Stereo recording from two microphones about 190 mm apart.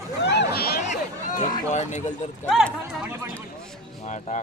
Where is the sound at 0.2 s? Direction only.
65° left (ahead or behind).